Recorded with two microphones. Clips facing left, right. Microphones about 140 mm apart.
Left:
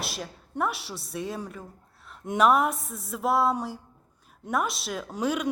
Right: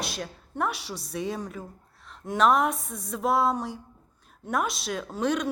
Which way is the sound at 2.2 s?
20° left (ahead or behind).